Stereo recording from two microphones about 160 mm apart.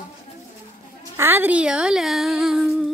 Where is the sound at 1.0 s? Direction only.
15° right (ahead or behind).